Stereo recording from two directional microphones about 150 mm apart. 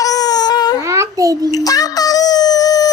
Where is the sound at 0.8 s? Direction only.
20° right (ahead or behind).